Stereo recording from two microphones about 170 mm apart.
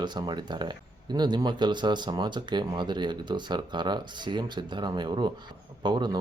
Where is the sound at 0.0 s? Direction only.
25° right (ahead or behind).